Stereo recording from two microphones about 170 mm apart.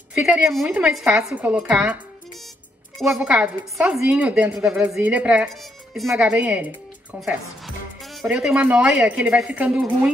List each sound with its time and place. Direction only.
0.1 s a woman's voice: 5° right (ahead or behind)
3.0 s a woman's voice: 5° right (ahead or behind)